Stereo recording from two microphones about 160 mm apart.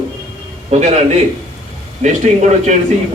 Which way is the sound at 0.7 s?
45° right (ahead or behind).